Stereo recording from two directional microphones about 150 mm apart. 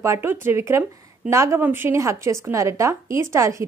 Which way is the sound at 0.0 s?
15° right (ahead or behind).